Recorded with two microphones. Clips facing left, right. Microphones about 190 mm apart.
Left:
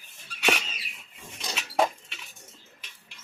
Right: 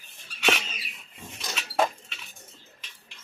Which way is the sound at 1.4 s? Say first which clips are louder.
Even; 15° left (ahead or behind).